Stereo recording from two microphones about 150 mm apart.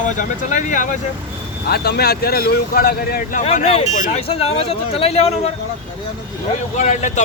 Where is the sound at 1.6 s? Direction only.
90° left.